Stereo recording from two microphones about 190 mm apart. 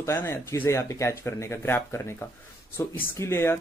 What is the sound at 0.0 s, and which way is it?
Speech, 15° left (ahead or behind).